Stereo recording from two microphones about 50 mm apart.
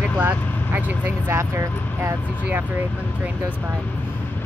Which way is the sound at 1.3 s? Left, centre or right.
Right.